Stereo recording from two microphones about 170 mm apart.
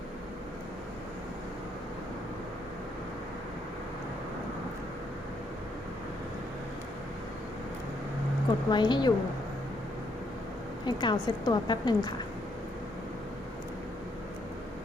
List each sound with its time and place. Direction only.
8.7 s a woman's voice: 25° left (ahead or behind)
10.8 s a woman's voice: 25° left (ahead or behind)